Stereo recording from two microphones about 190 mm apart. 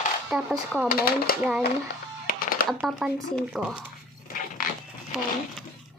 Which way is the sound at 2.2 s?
50° left (ahead or behind).